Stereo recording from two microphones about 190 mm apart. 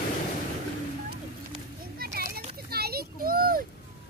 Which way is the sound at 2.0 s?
55° right (ahead or behind).